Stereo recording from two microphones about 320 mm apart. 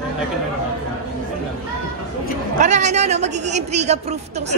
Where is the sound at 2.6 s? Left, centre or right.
Right.